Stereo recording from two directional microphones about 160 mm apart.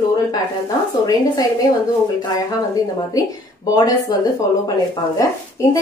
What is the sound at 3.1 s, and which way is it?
Speech, 20° left (ahead or behind).